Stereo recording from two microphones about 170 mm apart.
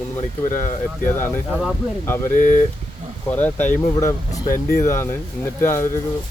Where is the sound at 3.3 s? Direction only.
10° left (ahead or behind).